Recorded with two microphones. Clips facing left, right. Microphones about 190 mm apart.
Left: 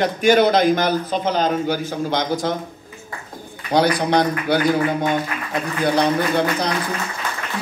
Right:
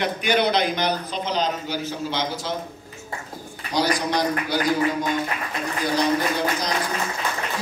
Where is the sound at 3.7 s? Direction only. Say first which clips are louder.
Left 6 dB; 60° left (ahead or behind).